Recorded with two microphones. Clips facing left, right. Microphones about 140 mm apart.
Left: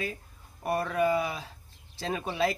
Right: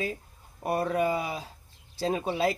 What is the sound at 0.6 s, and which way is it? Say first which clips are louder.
Speech: right 1 dB; 25° right (ahead or behind).